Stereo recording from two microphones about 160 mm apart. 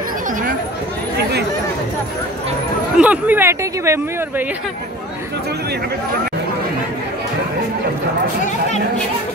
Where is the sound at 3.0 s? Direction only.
10° right (ahead or behind).